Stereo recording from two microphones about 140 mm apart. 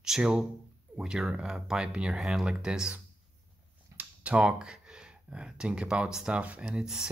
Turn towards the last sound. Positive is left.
turn(degrees=-5)  # may be behind; listen again after turning